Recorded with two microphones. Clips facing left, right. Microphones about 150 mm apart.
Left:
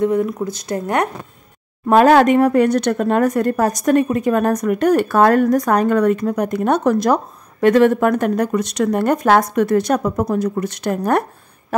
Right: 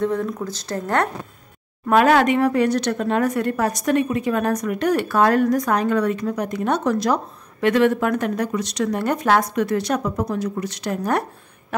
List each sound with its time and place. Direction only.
0.0 s speech: 10° left (ahead or behind)
1.9 s speech: 40° left (ahead or behind)